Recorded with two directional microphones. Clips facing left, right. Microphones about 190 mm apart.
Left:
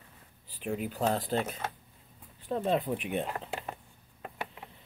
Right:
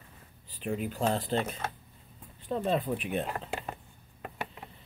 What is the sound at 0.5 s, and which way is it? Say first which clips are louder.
Speech: right 1 dB; 10° left (ahead or behind).